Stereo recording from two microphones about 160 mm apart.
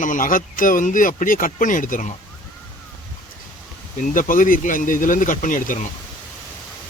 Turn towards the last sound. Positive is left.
turn(degrees=55)  # may be behind; listen again after turning